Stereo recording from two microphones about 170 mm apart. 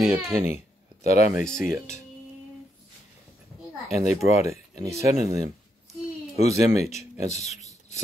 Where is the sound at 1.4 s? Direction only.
5° left (ahead or behind).